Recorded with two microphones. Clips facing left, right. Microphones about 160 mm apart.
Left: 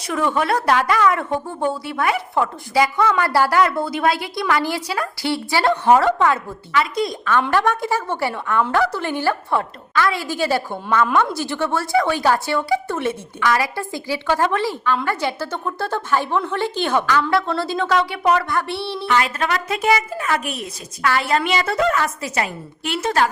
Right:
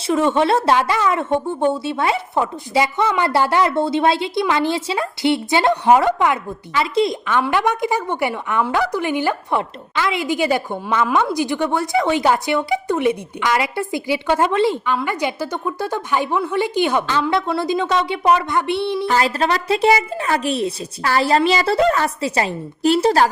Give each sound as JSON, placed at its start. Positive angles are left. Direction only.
{"t": 0.1, "sound": "a woman's voice", "side_deg": -25}
{"t": 6.7, "sound": "a woman's voice", "side_deg": -25}
{"t": 19.0, "sound": "a woman's voice", "side_deg": -35}